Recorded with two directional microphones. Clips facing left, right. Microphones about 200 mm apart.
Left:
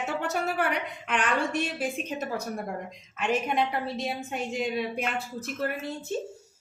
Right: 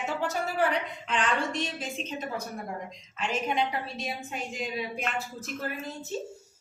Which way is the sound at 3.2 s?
60° left (ahead or behind).